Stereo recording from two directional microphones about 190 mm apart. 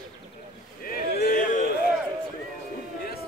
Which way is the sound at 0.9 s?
45° left (ahead or behind).